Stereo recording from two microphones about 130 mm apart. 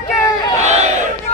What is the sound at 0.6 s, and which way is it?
Battle cry, 60° right (ahead or behind).